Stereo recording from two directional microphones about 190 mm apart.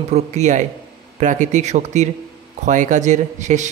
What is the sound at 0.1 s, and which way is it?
A man's voice, 40° right (ahead or behind).